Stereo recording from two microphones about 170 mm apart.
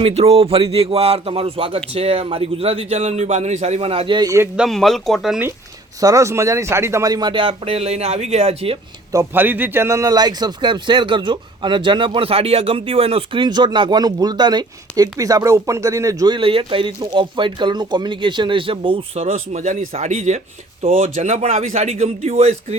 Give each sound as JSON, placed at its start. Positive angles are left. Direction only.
{"t": 0.0, "sound": "a man's voice", "side_deg": -35}
{"t": 4.5, "sound": "speech", "side_deg": 0}
{"t": 6.0, "sound": "a man's voice", "side_deg": -20}
{"t": 9.1, "sound": "a man's voice", "side_deg": -10}